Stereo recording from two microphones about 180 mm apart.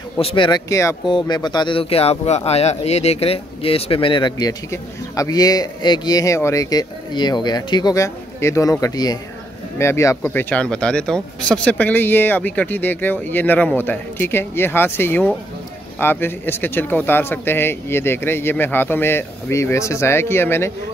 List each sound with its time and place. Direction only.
0.2 s a man's voice: 25° left (ahead or behind)